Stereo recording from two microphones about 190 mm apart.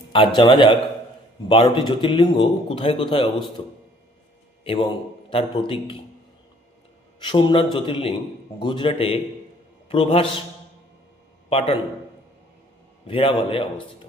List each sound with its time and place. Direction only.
0.3 s speech: 25° left (ahead or behind)
4.6 s a man's voice: 30° left (ahead or behind)
7.3 s speech: 25° left (ahead or behind)
11.4 s a man's voice: 30° left (ahead or behind)
13.1 s speech: 30° left (ahead or behind)